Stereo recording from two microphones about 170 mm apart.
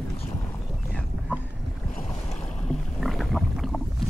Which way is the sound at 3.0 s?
Centre (ahead or behind).